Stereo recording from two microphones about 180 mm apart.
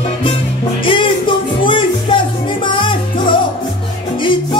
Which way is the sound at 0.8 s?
30° left (ahead or behind).